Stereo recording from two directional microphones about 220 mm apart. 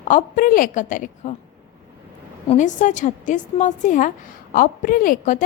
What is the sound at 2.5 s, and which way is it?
A woman's voice, 35° left (ahead or behind).